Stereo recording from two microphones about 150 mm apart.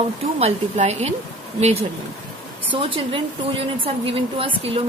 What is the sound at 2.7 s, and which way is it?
Speech, 35° right (ahead or behind).